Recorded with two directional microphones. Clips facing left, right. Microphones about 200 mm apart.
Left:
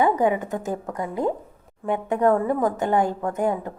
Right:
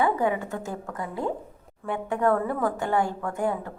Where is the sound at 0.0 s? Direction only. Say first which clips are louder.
Left 4 dB; 20° left (ahead or behind).